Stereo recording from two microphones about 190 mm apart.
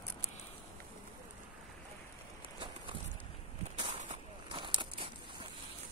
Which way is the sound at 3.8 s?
35° right (ahead or behind).